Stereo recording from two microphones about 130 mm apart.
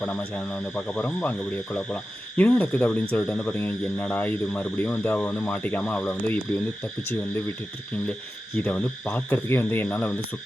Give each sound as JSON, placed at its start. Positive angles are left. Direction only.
{"t": 0.0, "sound": "speech", "side_deg": 10}
{"t": 8.5, "sound": "speech", "side_deg": 10}